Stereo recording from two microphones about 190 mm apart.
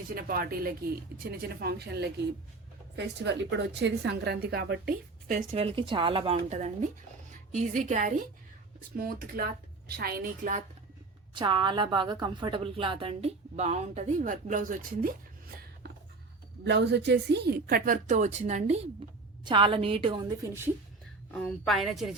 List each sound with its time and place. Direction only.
0.1 s a woman's voice: 50° right (ahead or behind)
3.8 s a woman's voice: 65° right (ahead or behind)
5.5 s a woman's voice: 30° right (ahead or behind)
9.0 s a woman's voice: 50° right (ahead or behind)
11.3 s a woman's voice: 25° right (ahead or behind); by 15.1 s 45° right (ahead or behind)
16.6 s a woman's voice: 65° right (ahead or behind); by 18.8 s 35° right (ahead or behind)
19.5 s a woman's voice: 25° right (ahead or behind)
21.3 s speech: 5° left (ahead or behind)